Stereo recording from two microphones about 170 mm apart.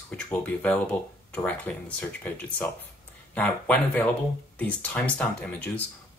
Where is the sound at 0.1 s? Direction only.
5° left (ahead or behind).